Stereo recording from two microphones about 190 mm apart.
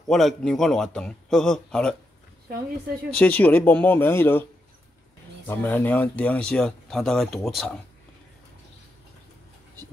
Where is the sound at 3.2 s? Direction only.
10° left (ahead or behind).